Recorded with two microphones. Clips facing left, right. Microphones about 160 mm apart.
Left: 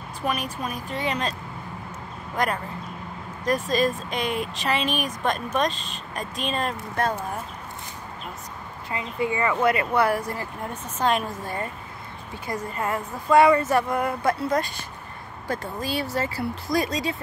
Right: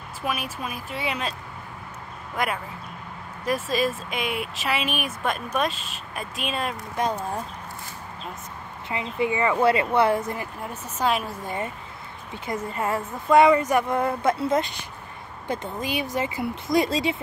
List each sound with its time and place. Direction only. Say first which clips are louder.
0.2 s speech: left 2 dB; 5° right (ahead or behind)
2.3 s speech: left 2 dB; 5° right (ahead or behind)
8.9 s a woman's voice: right 1 dB; 20° right (ahead or behind)
10.6 s speech: left 1 dB; 5° right (ahead or behind)
11.4 s a woman's voice: right 1 dB; 20° right (ahead or behind)